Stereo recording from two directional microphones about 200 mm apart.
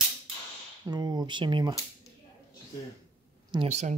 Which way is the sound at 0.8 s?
20° right (ahead or behind).